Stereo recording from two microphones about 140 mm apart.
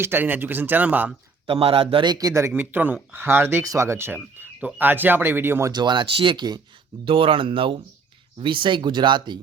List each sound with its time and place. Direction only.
0.0 s speech: 15° right (ahead or behind)
1.5 s speech: 40° right (ahead or behind); by 5.7 s 15° right (ahead or behind)
5.7 s speech: 35° right (ahead or behind)